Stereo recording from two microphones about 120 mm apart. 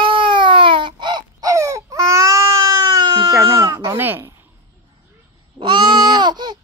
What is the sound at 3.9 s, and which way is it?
Speech, 15° right (ahead or behind).